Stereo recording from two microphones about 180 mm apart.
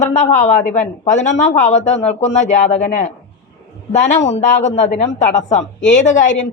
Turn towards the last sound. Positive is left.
turn(degrees=45)  # may be behind; listen again after turning